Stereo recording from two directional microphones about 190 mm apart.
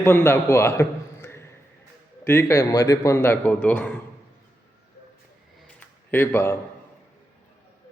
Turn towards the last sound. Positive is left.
turn(degrees=10)  # may be behind; listen again after turning